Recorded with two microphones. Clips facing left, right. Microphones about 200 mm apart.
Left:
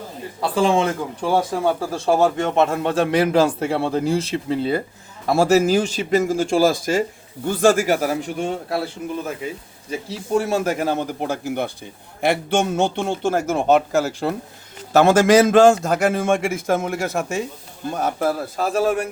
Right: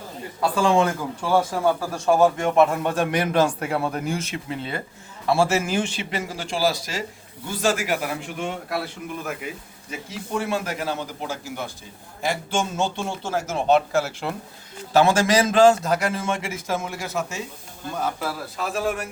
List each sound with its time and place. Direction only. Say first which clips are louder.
0.5 s a man's voice: left 2 dB; 25° left (ahead or behind); by 14.3 s 40° left (ahead or behind)
14.9 s a man's voice: left 5 dB; 50° left (ahead or behind)